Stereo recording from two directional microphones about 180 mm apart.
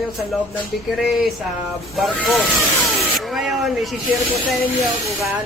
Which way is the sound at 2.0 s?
Centre (ahead or behind).